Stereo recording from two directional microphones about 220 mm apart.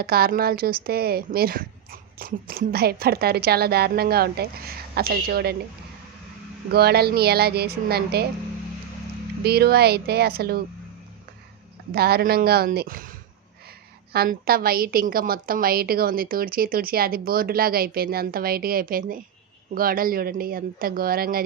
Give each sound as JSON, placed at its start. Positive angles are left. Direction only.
{"t": 0.0, "sound": "a woman's voice", "side_deg": -45}
{"t": 6.7, "sound": "a woman's voice", "side_deg": -45}
{"t": 9.4, "sound": "a woman's voice", "side_deg": -45}
{"t": 11.9, "sound": "a woman's voice", "side_deg": -45}